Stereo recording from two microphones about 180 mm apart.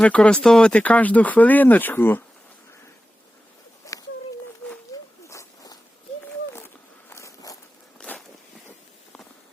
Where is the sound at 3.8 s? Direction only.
15° left (ahead or behind).